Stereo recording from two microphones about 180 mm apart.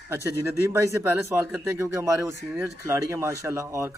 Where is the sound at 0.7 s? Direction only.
15° right (ahead or behind).